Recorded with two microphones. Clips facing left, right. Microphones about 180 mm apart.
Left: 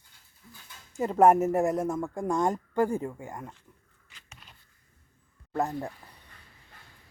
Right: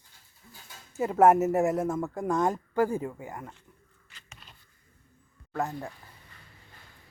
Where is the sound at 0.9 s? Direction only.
5° right (ahead or behind).